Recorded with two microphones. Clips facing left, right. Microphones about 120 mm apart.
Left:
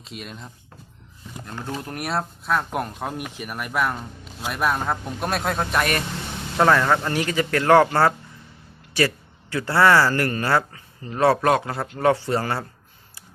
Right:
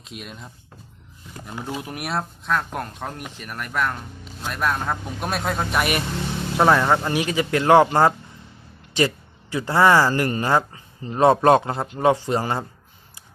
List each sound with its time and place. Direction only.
0.0 s speech: centre (ahead or behind); by 12.6 s 20° right (ahead or behind)